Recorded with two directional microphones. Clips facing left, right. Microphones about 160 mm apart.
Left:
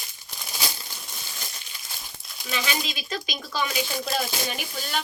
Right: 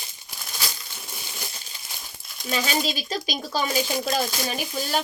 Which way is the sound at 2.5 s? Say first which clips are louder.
Right 4 dB; 35° right (ahead or behind).